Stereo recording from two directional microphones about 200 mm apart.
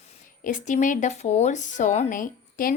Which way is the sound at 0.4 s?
40° left (ahead or behind).